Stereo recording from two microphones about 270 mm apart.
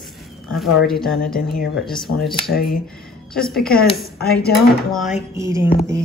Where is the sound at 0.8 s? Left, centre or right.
Centre.